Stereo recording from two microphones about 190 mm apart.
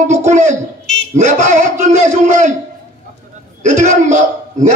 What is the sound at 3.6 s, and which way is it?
A man's voice, 40° right (ahead or behind).